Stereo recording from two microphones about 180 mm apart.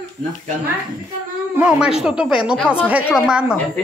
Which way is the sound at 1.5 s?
5° right (ahead or behind).